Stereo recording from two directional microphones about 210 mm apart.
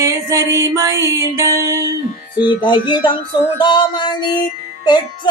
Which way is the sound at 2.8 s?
20° left (ahead or behind).